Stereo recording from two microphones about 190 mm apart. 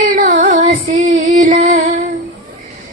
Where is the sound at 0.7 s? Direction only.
35° right (ahead or behind).